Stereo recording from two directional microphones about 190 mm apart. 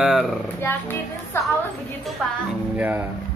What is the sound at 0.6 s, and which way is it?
Speech, 10° left (ahead or behind).